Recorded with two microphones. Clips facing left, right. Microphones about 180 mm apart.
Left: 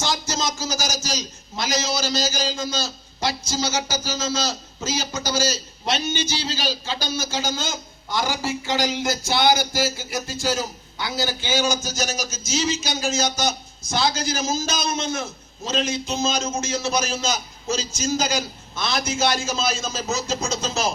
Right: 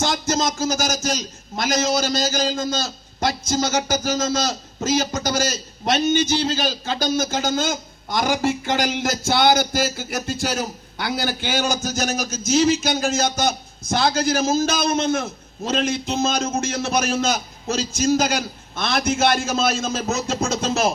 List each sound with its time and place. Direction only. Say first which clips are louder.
0.0 s a sound: right 4 dB; 50° right (ahead or behind)
3.5 s a man's voice: right 4 dB; 50° right (ahead or behind)
7.5 s a man's voice: right 6 dB; 60° right (ahead or behind)
10.0 s a man's voice: right 2 dB; 55° right (ahead or behind)